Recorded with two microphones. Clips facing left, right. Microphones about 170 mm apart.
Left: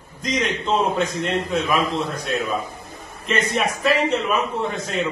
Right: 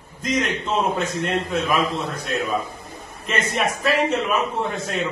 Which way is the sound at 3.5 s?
Centre (ahead or behind).